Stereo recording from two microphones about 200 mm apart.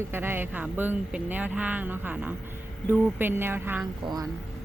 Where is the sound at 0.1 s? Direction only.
10° right (ahead or behind).